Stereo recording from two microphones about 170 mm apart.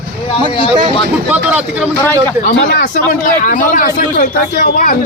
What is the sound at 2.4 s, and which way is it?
A man's voice, 50° left (ahead or behind).